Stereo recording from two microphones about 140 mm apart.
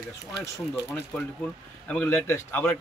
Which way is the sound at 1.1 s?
10° left (ahead or behind).